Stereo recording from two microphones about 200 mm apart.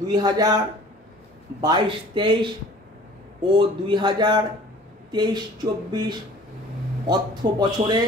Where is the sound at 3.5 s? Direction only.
25° right (ahead or behind).